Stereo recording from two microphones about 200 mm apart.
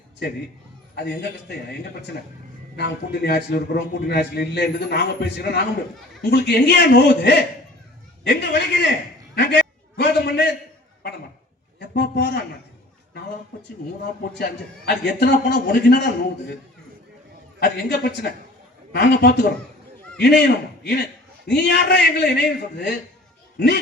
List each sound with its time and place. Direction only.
0.9 s a man's voice: 55° left (ahead or behind)
9.3 s a sound: 55° left (ahead or behind)
11.8 s speech: 60° left (ahead or behind)
14.2 s a man's voice: 55° left (ahead or behind)
17.6 s a man's voice: 55° left (ahead or behind)